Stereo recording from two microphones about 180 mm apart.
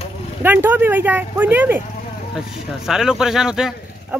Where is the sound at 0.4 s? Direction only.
10° right (ahead or behind).